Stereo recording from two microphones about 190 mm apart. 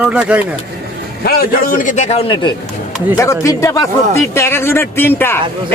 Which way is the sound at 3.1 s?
15° left (ahead or behind).